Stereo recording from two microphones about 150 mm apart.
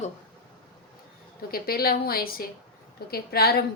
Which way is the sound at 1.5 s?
90° left.